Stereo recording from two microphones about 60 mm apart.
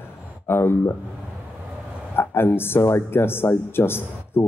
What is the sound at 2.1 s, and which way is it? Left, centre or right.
Speech, left.